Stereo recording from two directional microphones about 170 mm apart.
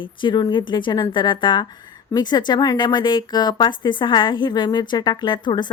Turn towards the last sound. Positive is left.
turn(degrees=25)  # may be behind; listen again after turning